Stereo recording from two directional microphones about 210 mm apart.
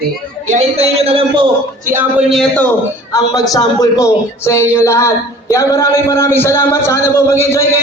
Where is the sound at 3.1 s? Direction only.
15° left (ahead or behind).